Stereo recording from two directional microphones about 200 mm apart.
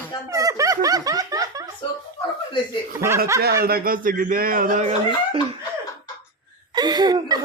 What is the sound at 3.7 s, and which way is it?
Speech, 45° right (ahead or behind).